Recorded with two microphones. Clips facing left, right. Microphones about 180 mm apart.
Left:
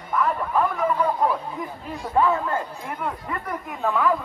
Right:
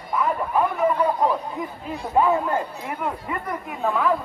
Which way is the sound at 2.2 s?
15° right (ahead or behind).